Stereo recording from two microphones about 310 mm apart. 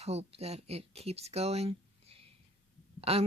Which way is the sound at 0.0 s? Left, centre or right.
Right.